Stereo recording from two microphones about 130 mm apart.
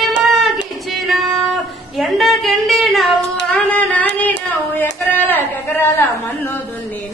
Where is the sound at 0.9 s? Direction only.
Centre (ahead or behind).